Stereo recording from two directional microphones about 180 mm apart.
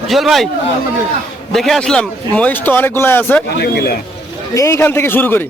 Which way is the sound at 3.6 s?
60° left (ahead or behind).